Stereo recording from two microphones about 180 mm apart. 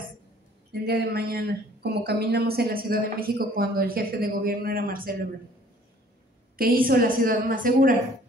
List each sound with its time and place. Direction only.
0.7 s speech: 65° right (ahead or behind)
6.6 s a woman's voice: 55° right (ahead or behind)